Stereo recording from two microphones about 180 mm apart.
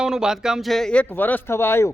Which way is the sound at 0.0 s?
5° right (ahead or behind).